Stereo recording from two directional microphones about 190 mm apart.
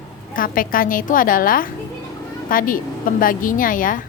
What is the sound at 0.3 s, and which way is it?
A woman's voice, 45° left (ahead or behind).